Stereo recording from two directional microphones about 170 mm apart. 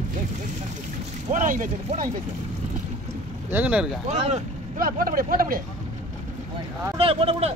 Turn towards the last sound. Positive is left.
turn(degrees=-35)  # may be behind; listen again after turning